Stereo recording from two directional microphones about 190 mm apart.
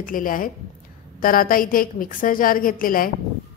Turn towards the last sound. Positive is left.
turn(degrees=50)  # may be behind; listen again after turning